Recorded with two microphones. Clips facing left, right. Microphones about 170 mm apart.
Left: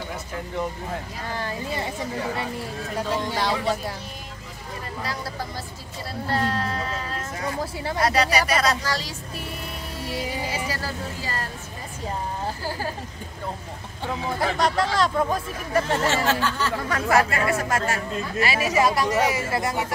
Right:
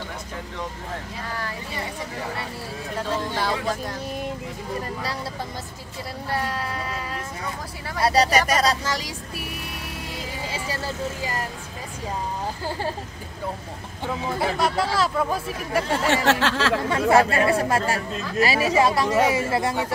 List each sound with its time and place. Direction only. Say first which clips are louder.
1.3 s speech: left 4 dB; 25° left (ahead or behind)
3.3 s speech: left 1 dB; 5° left (ahead or behind)
6.3 s a sound: left 2 dB; 10° right (ahead or behind)
8.0 s speech: right 3 dB; 35° right (ahead or behind)
8.8 s speech: even; 15° right (ahead or behind)
10.5 s speech: even; 25° right (ahead or behind)
14.6 s speech: left 2 dB; 5° right (ahead or behind)
16.1 s a sound: right 3 dB; 75° right (ahead or behind)
16.9 s speech: right 3 dB; 30° right (ahead or behind)